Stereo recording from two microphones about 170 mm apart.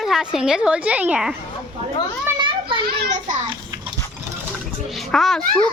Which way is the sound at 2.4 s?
30° right (ahead or behind).